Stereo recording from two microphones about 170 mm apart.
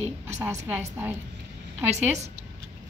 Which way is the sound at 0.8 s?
15° right (ahead or behind).